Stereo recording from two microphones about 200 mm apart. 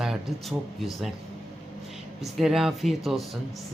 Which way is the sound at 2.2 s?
Centre (ahead or behind).